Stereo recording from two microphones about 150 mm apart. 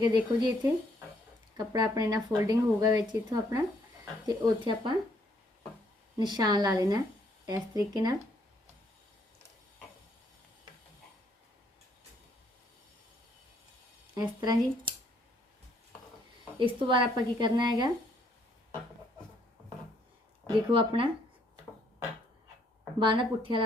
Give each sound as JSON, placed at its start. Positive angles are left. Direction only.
{"t": 0.0, "sound": "a woman's voice", "side_deg": -30}
{"t": 6.1, "sound": "speech", "side_deg": -30}
{"t": 14.2, "sound": "speech", "side_deg": -25}
{"t": 16.6, "sound": "a woman's voice", "side_deg": -35}
{"t": 20.7, "sound": "a woman's voice", "side_deg": -35}
{"t": 23.0, "sound": "a woman's voice", "side_deg": -35}